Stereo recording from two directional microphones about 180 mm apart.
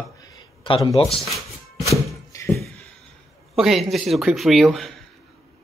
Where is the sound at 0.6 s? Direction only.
25° left (ahead or behind).